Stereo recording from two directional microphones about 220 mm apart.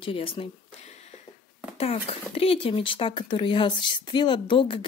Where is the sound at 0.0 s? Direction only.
25° left (ahead or behind).